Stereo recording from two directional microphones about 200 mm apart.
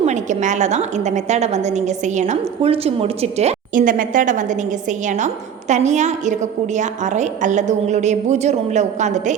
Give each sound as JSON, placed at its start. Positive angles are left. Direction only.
{"t": 0.0, "sound": "a woman's voice", "side_deg": -35}